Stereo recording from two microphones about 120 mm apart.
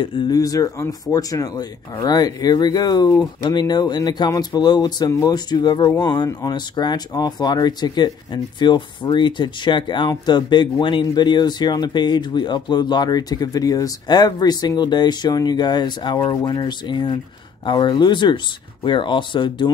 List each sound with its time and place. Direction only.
0.0 s speech: 40° left (ahead or behind)
0.4 s speech: 30° left (ahead or behind)